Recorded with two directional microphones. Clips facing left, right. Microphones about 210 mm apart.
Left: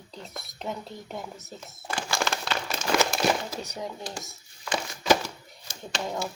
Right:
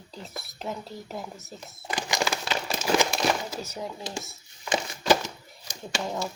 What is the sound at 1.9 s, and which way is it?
Crumpling, 15° right (ahead or behind).